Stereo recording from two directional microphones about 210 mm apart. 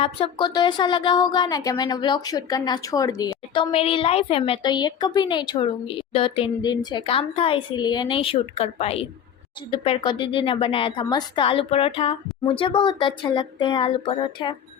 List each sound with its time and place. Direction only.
0.0 s speech: 25° left (ahead or behind)